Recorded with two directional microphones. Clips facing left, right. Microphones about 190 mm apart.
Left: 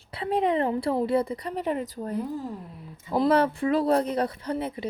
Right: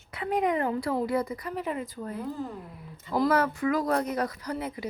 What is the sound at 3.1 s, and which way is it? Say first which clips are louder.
Speech: left 3 dB; 25° left (ahead or behind).